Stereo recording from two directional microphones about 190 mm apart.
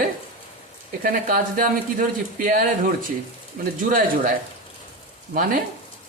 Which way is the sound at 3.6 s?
50° right (ahead or behind).